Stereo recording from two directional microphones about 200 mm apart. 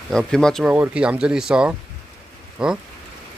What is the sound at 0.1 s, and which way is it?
Speech, 5° left (ahead or behind).